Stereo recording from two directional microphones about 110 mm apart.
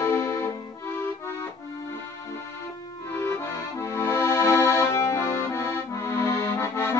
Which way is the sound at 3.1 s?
20° left (ahead or behind).